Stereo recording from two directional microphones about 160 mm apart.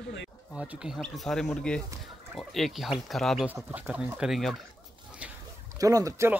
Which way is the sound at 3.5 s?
10° right (ahead or behind).